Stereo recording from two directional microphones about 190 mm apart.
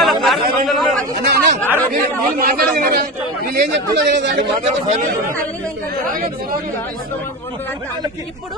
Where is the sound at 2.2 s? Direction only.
50° right (ahead or behind).